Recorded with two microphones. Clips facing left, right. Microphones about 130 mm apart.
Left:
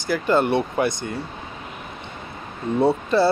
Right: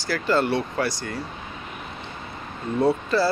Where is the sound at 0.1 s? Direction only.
20° left (ahead or behind).